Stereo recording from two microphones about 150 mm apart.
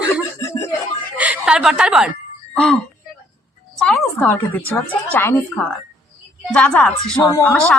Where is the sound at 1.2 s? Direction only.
5° right (ahead or behind).